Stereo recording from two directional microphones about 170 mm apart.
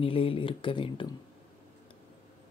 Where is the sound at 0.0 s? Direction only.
35° left (ahead or behind).